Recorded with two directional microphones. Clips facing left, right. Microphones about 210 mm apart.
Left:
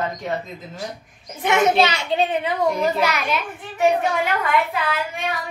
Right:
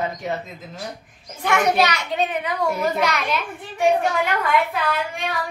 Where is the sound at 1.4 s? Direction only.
25° left (ahead or behind).